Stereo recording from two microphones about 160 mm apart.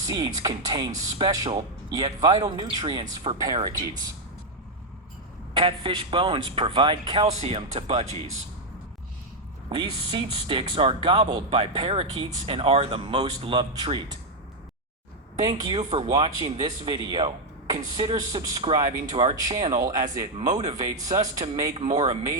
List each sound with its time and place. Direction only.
0.1 s speech: 25° right (ahead or behind)
5.5 s speech: 35° right (ahead or behind)
7.3 s speech: 40° right (ahead or behind)
9.6 s speech: 30° right (ahead or behind)
15.4 s speech: 25° right (ahead or behind)